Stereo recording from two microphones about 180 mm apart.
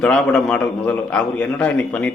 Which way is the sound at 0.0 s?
5° left (ahead or behind).